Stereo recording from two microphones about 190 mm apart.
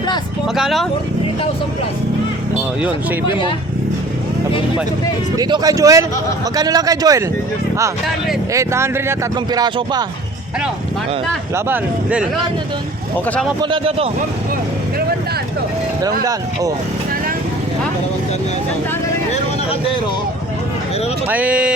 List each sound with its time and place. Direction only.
0.4 s speech: centre (ahead or behind)
3.2 s speech: 25° left (ahead or behind)
5.4 s speech: 20° right (ahead or behind)
8.5 s speech: 15° right (ahead or behind)
11.5 s speech: 10° right (ahead or behind)
13.2 s speech: 5° left (ahead or behind)
13.6 s speech: 25° right (ahead or behind)
16.2 s speech: 20° right (ahead or behind)
21.2 s speech: 10° right (ahead or behind)